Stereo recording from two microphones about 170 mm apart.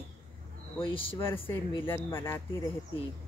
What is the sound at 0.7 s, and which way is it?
Speech, 30° left (ahead or behind).